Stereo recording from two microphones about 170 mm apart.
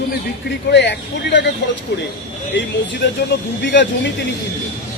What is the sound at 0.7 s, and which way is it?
Speech, 90° left.